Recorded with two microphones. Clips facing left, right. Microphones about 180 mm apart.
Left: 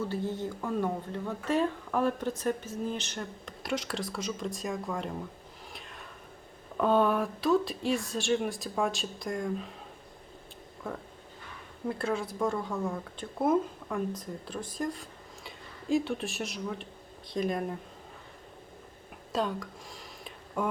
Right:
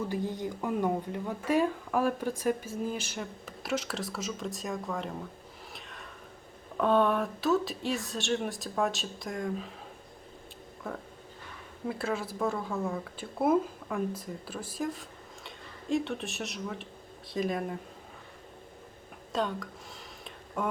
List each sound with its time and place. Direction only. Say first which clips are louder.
0.1 s speech: even; 15° right (ahead or behind)
5.7 s a sound: left 1 dB; centre (ahead or behind)
6.7 s speech: even; centre (ahead or behind)
10.8 s speech: even; 5° right (ahead or behind)
19.3 s speech: left 1 dB; centre (ahead or behind)